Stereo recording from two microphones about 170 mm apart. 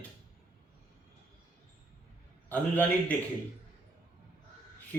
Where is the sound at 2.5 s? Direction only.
10° left (ahead or behind).